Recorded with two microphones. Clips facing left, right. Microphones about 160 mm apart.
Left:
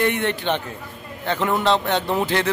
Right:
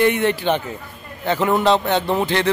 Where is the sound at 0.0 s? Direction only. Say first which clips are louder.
Right 4 dB; 5° right (ahead or behind).